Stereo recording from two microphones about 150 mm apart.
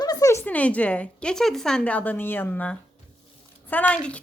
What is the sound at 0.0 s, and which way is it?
A woman's voice, 25° left (ahead or behind).